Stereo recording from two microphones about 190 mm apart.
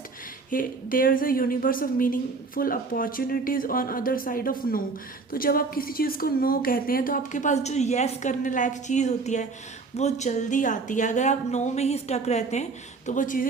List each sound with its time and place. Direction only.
0.5 s a woman's voice: 45° left (ahead or behind)